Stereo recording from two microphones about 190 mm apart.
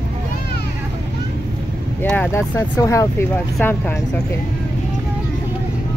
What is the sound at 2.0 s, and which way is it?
Speech, 10° left (ahead or behind).